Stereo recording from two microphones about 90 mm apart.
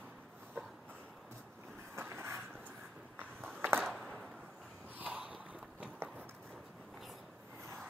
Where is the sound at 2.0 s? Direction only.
30° right (ahead or behind).